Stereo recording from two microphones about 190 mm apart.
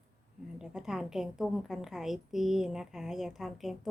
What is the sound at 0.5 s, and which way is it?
A woman's voice, 5° right (ahead or behind).